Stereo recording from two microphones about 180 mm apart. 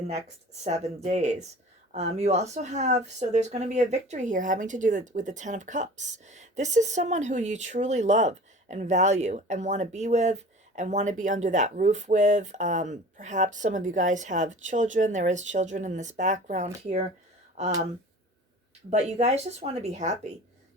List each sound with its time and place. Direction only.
1.0 s speech: 40° right (ahead or behind)
18.9 s speech: 40° right (ahead or behind)